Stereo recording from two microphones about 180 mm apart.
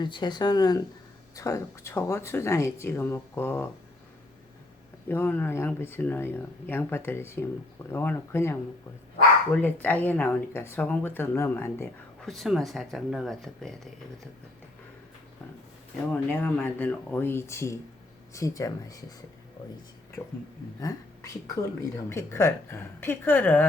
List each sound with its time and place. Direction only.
0.0 s speech: 25° left (ahead or behind)
5.0 s speech: 10° left (ahead or behind)
12.2 s speech: centre (ahead or behind)
16.0 s speech: 10° left (ahead or behind)
20.7 s speech: 20° left (ahead or behind)